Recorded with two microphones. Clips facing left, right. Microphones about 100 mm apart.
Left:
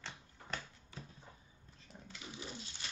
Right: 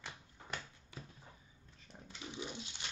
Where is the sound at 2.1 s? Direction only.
20° right (ahead or behind).